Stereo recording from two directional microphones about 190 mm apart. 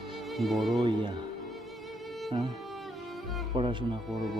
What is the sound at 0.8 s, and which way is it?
Speech, 25° right (ahead or behind).